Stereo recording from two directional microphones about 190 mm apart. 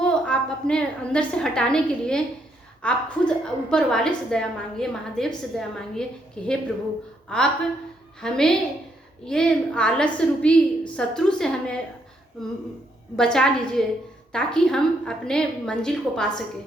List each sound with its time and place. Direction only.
0.0 s a woman's voice: 5° left (ahead or behind)
13.1 s a woman's voice: 5° left (ahead or behind)